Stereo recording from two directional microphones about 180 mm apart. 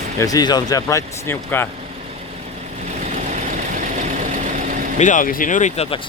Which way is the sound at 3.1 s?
45° right (ahead or behind).